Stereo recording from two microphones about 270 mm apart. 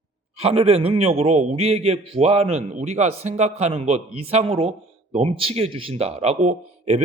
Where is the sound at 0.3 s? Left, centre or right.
Right.